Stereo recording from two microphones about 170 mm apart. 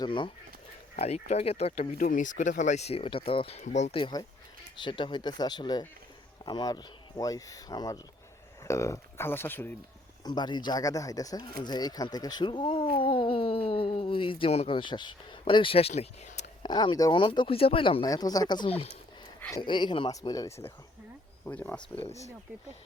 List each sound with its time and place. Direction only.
0.0 s speech: 30° left (ahead or behind)
3.9 s speech: 25° left (ahead or behind)
10.2 s speech: 25° left (ahead or behind); by 16.5 s 40° left (ahead or behind)
16.6 s speech: 25° left (ahead or behind)
19.4 s speech: 20° left (ahead or behind)